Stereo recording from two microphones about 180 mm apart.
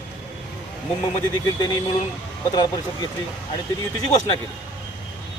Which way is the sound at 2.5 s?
25° left (ahead or behind).